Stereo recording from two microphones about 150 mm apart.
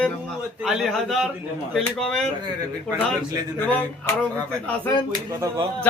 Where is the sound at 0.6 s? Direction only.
Centre (ahead or behind).